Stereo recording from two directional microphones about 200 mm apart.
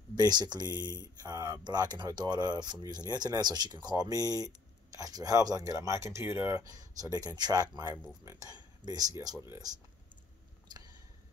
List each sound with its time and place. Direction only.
0.1 s speech: 20° right (ahead or behind)